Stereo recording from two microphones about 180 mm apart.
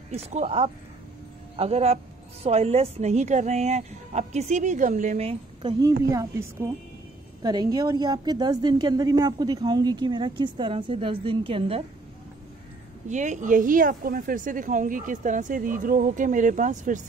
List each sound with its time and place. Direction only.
0.1 s a woman's voice: 35° right (ahead or behind)
13.1 s speech: 40° right (ahead or behind)